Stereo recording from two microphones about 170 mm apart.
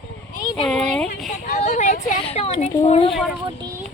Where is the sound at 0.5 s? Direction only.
5° left (ahead or behind).